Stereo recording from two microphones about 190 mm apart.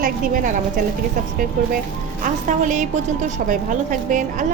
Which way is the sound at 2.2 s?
40° right (ahead or behind).